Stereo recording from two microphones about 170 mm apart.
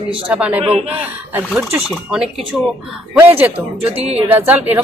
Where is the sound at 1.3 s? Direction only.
15° right (ahead or behind).